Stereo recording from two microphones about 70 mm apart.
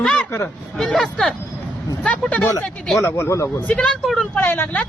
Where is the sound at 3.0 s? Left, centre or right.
Left.